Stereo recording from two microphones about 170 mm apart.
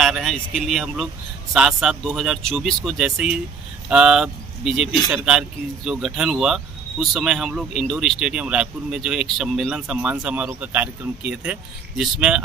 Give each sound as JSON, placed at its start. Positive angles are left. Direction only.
{"t": 0.0, "sound": "speech", "side_deg": 0}